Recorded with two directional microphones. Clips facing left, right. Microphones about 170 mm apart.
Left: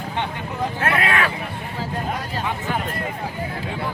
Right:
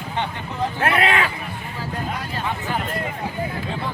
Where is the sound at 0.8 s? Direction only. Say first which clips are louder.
Right 2 dB; 25° right (ahead or behind).